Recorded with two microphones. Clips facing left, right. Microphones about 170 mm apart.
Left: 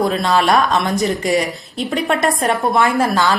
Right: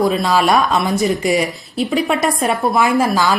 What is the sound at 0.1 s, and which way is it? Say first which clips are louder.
A woman's voice: even; 5° right (ahead or behind).